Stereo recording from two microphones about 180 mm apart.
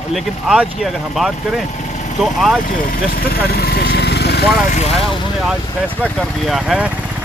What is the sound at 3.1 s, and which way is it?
Vehicle, 60° left (ahead or behind).